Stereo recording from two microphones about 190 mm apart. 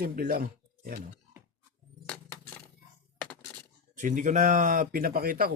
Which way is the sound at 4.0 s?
40° right (ahead or behind).